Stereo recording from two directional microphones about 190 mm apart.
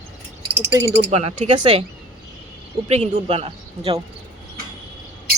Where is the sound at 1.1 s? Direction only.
35° right (ahead or behind).